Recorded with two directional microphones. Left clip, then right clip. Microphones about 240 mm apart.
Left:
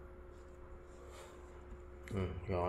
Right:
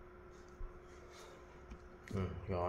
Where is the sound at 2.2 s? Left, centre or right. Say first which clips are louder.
Left 2 dB; centre.